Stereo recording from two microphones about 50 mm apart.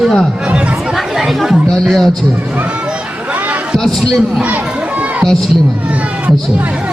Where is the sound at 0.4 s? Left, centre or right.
Right.